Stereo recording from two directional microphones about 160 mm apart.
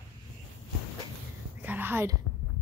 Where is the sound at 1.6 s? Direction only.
10° right (ahead or behind).